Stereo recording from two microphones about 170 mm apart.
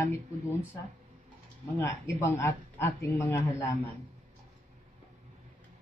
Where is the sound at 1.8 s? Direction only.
15° left (ahead or behind).